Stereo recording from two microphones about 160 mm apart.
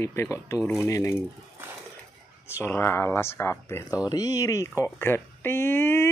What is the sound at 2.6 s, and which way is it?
Speech, 15° left (ahead or behind).